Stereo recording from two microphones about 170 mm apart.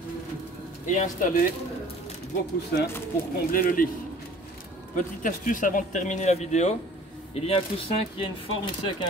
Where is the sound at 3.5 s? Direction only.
55° left (ahead or behind).